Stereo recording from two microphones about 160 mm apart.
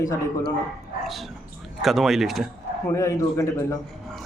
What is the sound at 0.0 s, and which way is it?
Speech, 20° left (ahead or behind).